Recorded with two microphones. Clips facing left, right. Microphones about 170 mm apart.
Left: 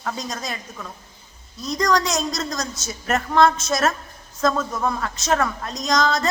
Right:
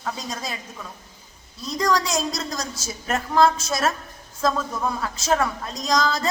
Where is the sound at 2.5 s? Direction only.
30° right (ahead or behind).